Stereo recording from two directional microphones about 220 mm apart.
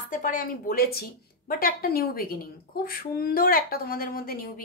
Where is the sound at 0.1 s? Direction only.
40° left (ahead or behind).